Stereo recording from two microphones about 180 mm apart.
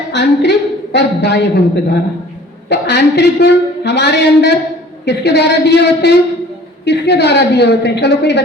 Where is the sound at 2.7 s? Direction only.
70° left (ahead or behind).